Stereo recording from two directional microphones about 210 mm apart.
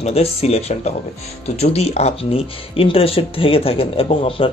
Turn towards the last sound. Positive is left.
turn(degrees=25)  # may be behind; listen again after turning